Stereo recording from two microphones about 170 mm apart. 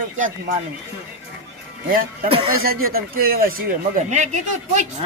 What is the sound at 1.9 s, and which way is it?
Speech, 55° right (ahead or behind).